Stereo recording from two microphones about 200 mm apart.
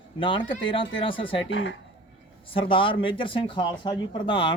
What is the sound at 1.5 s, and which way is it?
Speech, 65° left (ahead or behind).